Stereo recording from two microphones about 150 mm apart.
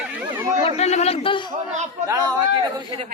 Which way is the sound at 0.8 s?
45° left (ahead or behind).